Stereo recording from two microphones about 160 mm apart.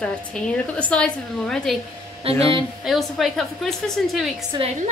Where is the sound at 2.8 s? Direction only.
Centre (ahead or behind).